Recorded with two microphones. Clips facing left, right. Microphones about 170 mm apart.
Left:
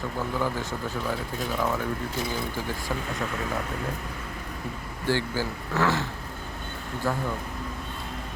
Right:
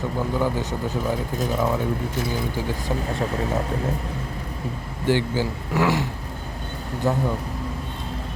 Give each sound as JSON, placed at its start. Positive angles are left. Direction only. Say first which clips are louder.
{"t": 0.3, "sound": "speech", "louder": "right 5 dB", "side_deg": -15}
{"t": 3.1, "sound": "speech", "louder": "right 6 dB", "side_deg": -30}
{"t": 5.0, "sound": "speech", "louder": "right 5 dB", "side_deg": -15}